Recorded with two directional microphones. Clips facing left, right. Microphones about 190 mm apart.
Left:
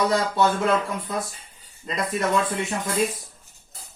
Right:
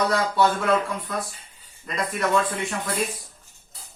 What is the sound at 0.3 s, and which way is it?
Speech, 25° left (ahead or behind).